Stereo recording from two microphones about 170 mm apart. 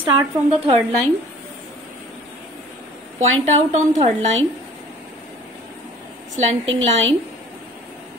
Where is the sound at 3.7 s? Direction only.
40° right (ahead or behind).